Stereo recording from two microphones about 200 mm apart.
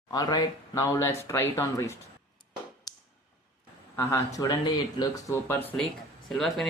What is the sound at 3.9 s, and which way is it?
Speech, 15° left (ahead or behind).